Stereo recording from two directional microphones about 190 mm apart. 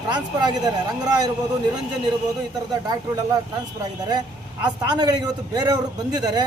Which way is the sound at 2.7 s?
20° right (ahead or behind).